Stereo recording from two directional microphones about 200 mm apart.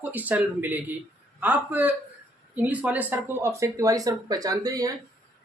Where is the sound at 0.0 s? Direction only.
10° right (ahead or behind).